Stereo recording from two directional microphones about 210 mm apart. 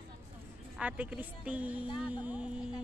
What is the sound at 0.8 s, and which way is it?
A woman's voice, 5° right (ahead or behind).